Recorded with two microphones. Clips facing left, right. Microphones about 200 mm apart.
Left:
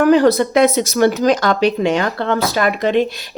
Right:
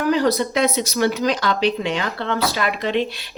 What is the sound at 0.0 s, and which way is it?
Speech, 50° left (ahead or behind).